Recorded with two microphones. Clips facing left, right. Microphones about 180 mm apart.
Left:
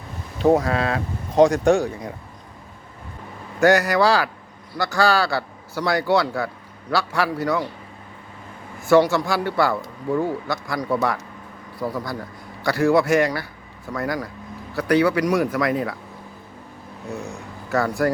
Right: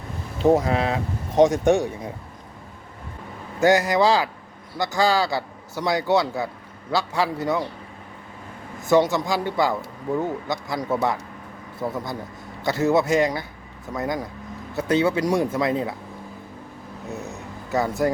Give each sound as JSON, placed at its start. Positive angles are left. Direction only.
{"t": 0.6, "sound": "a man's voice", "side_deg": -20}
{"t": 3.6, "sound": "a man's voice", "side_deg": -20}
{"t": 8.8, "sound": "a man's voice", "side_deg": -20}
{"t": 17.1, "sound": "a sound", "side_deg": -5}
{"t": 17.7, "sound": "speech", "side_deg": -20}